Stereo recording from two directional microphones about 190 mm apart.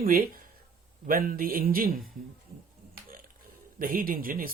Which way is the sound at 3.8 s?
50° right (ahead or behind).